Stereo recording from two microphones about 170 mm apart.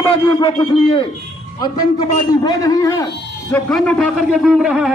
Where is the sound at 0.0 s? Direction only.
20° left (ahead or behind).